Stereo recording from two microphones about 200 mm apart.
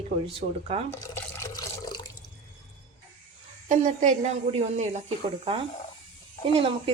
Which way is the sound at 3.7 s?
40° right (ahead or behind).